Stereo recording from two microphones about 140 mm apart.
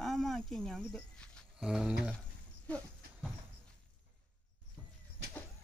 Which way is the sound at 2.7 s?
10° left (ahead or behind).